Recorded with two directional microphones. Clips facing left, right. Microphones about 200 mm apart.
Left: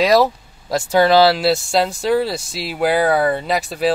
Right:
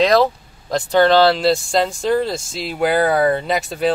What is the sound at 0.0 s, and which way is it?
Speech, 10° left (ahead or behind).